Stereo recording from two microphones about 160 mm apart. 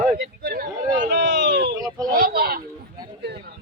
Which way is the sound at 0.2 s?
75° right (ahead or behind).